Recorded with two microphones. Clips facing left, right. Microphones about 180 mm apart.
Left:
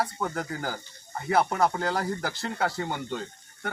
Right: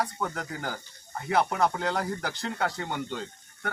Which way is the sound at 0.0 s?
5° left (ahead or behind).